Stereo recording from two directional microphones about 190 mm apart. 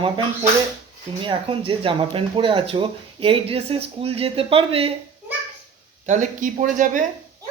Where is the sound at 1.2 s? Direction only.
25° right (ahead or behind).